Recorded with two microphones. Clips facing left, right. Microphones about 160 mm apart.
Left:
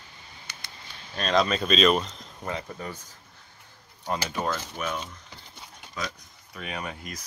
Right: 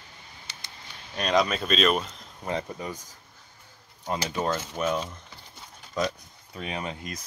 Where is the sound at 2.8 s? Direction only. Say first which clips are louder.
Right 2 dB; 15° right (ahead or behind).